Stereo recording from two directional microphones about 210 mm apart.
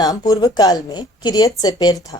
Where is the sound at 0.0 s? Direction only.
20° left (ahead or behind).